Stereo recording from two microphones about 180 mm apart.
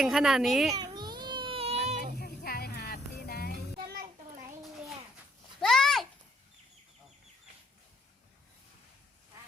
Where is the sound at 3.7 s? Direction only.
55° right (ahead or behind).